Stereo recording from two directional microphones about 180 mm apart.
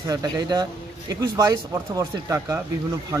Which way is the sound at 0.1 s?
20° right (ahead or behind).